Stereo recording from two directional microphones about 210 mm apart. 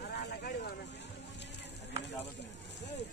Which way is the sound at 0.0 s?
50° left (ahead or behind).